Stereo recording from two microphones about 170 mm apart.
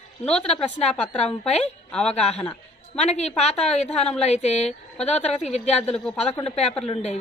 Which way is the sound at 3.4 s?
40° left (ahead or behind).